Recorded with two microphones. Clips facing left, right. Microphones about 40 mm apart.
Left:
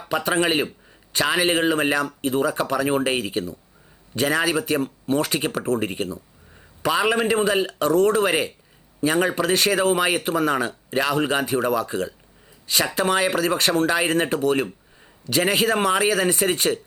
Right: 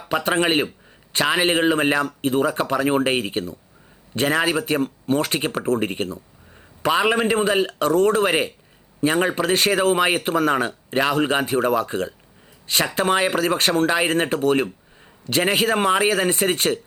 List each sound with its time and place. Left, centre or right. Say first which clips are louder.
0.3 s speech: right 1 dB; right
4.3 s speech: right 1 dB; right
6.8 s speech: right 1 dB; right
15.5 s speech: right 2 dB; right